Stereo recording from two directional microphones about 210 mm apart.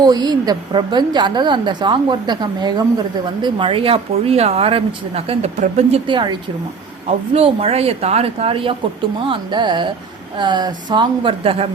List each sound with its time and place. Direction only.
0.0 s speech: 20° right (ahead or behind)